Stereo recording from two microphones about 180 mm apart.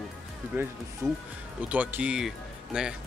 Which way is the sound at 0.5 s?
10° right (ahead or behind).